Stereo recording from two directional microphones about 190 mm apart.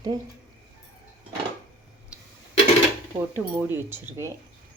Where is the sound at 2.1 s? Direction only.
5° right (ahead or behind).